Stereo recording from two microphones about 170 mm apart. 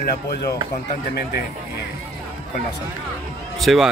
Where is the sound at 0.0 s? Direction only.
70° left (ahead or behind).